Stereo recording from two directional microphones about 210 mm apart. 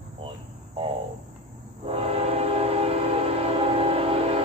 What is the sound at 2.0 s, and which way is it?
Train, 30° right (ahead or behind).